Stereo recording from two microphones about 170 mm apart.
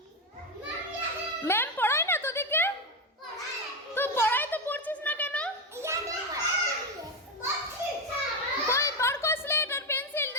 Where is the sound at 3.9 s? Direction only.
15° left (ahead or behind).